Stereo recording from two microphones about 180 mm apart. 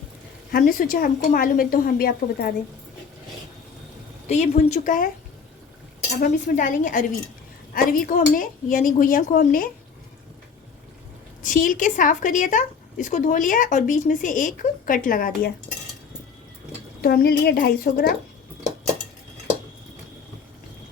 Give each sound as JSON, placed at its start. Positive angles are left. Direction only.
{"t": 0.5, "sound": "a woman's voice", "side_deg": 50}
{"t": 4.3, "sound": "a woman's voice", "side_deg": 40}
{"t": 6.3, "sound": "a woman's voice", "side_deg": 45}
{"t": 11.4, "sound": "a woman's voice", "side_deg": 50}
{"t": 17.0, "sound": "a child's voice", "side_deg": 60}